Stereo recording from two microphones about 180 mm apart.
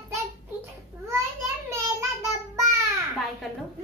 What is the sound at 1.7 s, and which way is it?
Child singing, 15° right (ahead or behind).